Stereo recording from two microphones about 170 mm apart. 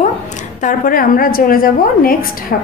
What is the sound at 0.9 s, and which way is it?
A woman's voice, 55° left (ahead or behind).